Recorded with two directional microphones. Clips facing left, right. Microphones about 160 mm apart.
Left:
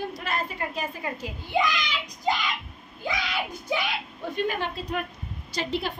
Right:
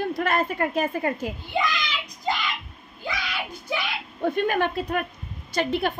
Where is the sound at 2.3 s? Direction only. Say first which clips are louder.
Left 1 dB; 15° left (ahead or behind).